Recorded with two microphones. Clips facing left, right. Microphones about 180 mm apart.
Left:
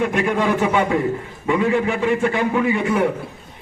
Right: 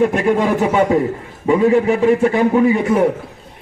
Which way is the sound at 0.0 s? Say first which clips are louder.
Right 5 dB; 40° right (ahead or behind).